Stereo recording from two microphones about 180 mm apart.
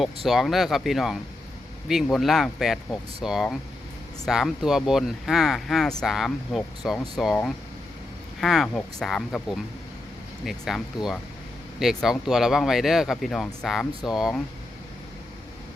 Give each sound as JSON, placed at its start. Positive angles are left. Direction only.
{"t": 0.3, "sound": "speech", "side_deg": 0}